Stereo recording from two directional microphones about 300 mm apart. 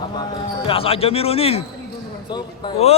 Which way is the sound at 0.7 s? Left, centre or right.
Centre.